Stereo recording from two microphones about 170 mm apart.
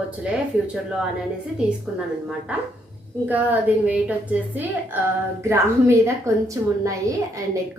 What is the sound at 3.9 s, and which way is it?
A woman's voice, 10° right (ahead or behind).